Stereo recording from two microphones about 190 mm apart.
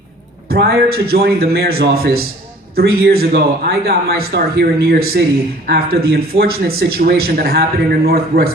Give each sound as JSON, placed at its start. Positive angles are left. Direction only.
{"t": 0.4, "sound": "a man's voice", "side_deg": -55}